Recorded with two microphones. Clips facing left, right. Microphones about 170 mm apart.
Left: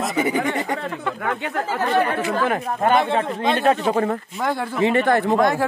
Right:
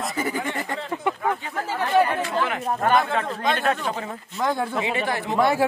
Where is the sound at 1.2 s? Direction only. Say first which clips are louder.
Left 2 dB; 75° left (ahead or behind).